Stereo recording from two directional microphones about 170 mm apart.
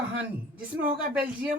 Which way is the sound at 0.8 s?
5° right (ahead or behind).